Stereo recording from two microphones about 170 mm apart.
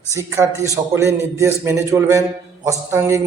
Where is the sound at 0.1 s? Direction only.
15° right (ahead or behind).